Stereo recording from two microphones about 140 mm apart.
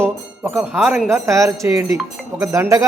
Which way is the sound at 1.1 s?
20° right (ahead or behind).